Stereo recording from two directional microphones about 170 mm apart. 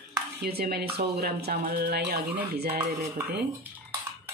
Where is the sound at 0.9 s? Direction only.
65° right (ahead or behind).